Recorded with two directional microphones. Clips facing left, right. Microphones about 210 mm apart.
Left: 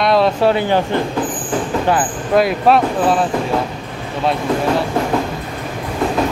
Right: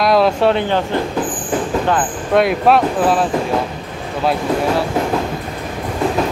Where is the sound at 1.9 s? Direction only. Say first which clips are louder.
Left 1 dB; 5° left (ahead or behind).